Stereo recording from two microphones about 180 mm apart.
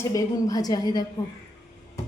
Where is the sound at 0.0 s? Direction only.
20° left (ahead or behind).